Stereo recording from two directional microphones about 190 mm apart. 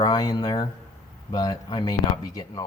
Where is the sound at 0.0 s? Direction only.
20° left (ahead or behind).